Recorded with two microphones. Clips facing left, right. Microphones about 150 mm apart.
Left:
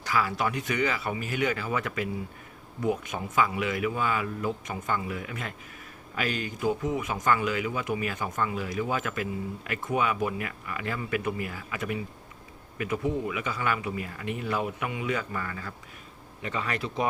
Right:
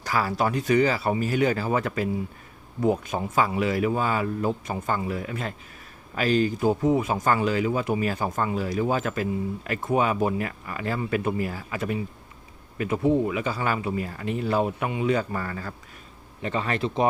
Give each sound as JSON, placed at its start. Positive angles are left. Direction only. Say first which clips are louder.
{"t": 0.0, "sound": "speech", "louder": "right 3 dB", "side_deg": -35}